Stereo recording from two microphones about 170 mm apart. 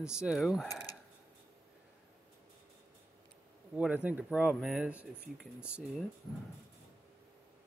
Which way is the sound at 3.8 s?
10° right (ahead or behind).